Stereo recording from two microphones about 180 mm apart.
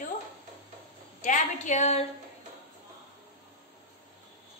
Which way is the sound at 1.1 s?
45° left (ahead or behind).